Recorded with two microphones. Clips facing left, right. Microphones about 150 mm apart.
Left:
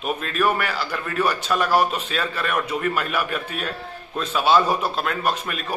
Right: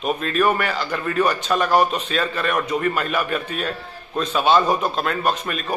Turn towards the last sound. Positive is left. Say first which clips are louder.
# right 2 dB
turn(degrees=5)  # may be behind; listen again after turning